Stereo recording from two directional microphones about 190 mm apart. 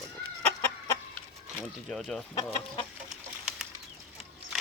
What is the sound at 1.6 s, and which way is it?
Speech, centre (ahead or behind).